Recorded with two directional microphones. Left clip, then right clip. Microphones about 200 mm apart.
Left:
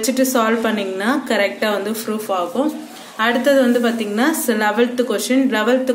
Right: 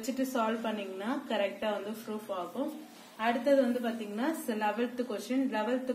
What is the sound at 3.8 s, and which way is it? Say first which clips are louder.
A woman's voice: left 16 dB; 25° left (ahead or behind).